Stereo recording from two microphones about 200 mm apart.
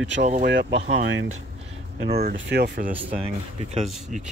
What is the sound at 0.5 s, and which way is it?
Speech, 60° right (ahead or behind).